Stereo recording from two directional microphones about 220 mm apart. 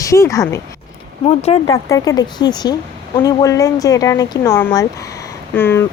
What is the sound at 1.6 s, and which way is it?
Speech, 15° left (ahead or behind).